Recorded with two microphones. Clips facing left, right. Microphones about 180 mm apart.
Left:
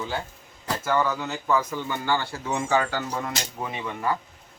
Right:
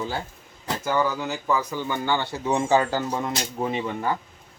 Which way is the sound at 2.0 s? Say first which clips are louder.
Right 2 dB; 20° right (ahead or behind).